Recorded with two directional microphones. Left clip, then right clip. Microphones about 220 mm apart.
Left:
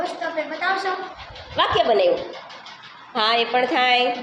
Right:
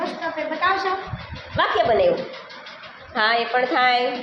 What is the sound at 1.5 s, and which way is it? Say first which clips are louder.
Speech: even; 15° left (ahead or behind).